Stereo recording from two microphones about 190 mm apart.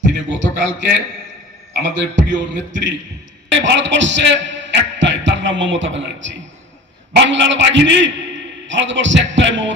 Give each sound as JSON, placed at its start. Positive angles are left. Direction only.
{"t": 0.3, "sound": "music", "side_deg": -75}
{"t": 1.7, "sound": "a man's voice", "side_deg": -75}